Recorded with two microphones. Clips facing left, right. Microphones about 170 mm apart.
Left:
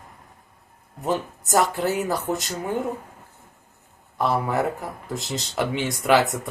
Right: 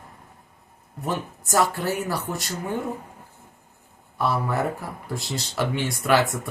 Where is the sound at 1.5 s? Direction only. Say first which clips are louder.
Left 1 dB; 20° left (ahead or behind).